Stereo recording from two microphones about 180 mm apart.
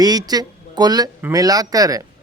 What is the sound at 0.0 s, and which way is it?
A man's voice, 20° right (ahead or behind).